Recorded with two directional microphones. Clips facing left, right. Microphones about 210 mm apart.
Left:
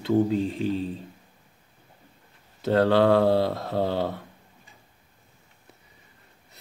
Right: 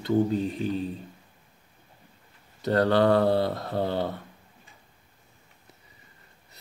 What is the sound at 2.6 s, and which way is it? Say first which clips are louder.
Speech: left 2 dB; centre (ahead or behind).